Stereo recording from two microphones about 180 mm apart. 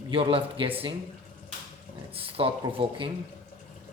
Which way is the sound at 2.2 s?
30° right (ahead or behind).